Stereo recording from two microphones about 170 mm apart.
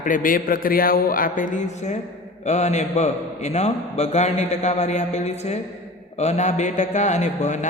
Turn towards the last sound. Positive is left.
turn(degrees=45)  # may be behind; listen again after turning